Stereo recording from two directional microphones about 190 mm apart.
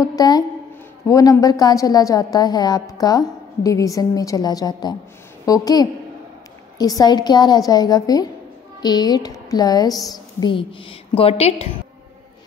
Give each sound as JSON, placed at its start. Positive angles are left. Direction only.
{"t": 0.0, "sound": "a woman's voice", "side_deg": 20}